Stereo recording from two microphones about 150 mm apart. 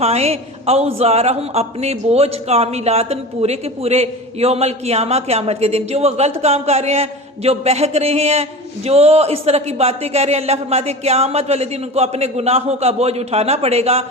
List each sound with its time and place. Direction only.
0.0 s a woman's voice: 45° right (ahead or behind)